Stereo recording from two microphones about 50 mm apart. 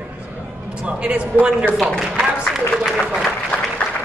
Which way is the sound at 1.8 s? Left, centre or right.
Centre.